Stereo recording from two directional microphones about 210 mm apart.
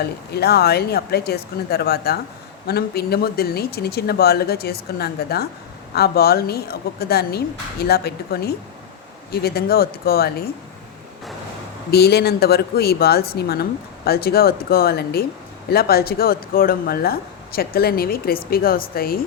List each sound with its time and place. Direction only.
0.3 s speech: 50° left (ahead or behind)
11.9 s speech: 50° left (ahead or behind)